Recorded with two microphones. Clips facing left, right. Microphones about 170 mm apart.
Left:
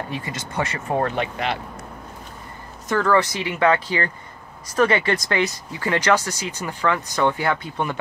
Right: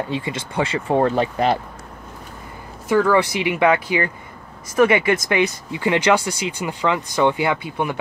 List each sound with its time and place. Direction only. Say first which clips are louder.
0.1 s speech: right 4 dB; 20° right (ahead or behind)
1.1 s speech: right 6 dB; 35° right (ahead or behind)
2.9 s speech: right 3 dB; 10° right (ahead or behind)